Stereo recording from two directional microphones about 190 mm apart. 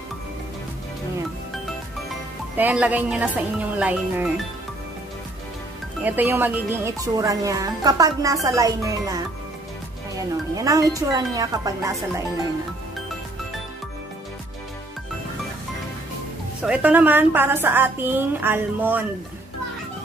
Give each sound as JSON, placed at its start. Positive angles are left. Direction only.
{"t": 2.5, "sound": "a woman's voice", "side_deg": -10}
{"t": 6.0, "sound": "a woman's voice", "side_deg": -10}
{"t": 16.6, "sound": "a woman's voice", "side_deg": -5}